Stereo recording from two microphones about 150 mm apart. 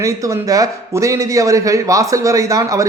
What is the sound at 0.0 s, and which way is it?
A man's voice, 20° right (ahead or behind).